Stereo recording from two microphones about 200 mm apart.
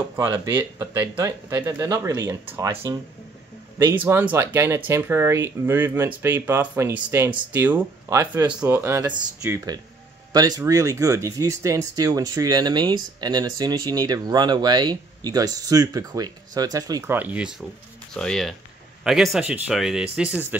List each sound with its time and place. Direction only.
0.1 s speech: 15° right (ahead or behind)
10.3 s speech: 20° right (ahead or behind)